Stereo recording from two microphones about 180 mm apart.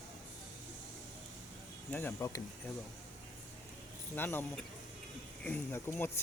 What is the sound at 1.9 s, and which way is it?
Speech, 10° left (ahead or behind).